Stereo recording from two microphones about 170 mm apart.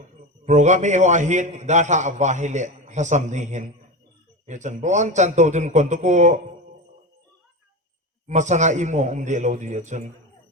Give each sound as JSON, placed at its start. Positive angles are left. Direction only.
{"t": 0.4, "sound": "a man's voice", "side_deg": -45}
{"t": 8.3, "sound": "a man's voice", "side_deg": -45}